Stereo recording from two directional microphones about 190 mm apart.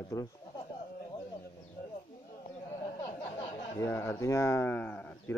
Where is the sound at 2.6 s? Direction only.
15° left (ahead or behind).